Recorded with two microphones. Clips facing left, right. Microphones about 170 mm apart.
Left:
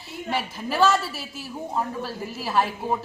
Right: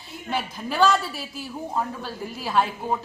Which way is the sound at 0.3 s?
Centre (ahead or behind).